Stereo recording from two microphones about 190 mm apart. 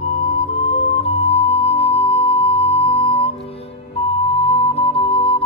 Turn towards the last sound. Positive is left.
turn(degrees=30)  # may be behind; listen again after turning